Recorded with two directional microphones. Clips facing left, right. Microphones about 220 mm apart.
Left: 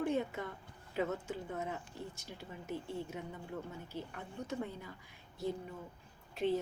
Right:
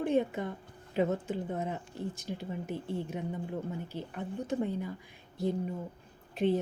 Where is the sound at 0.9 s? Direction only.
25° right (ahead or behind).